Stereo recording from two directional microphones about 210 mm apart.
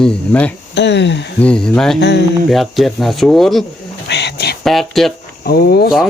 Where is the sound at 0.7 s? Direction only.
55° left (ahead or behind).